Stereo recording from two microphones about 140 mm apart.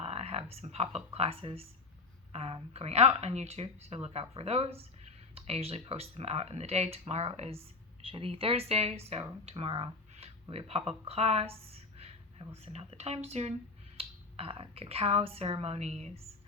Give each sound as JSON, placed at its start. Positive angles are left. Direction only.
{"t": 0.0, "sound": "a woman's voice", "side_deg": -45}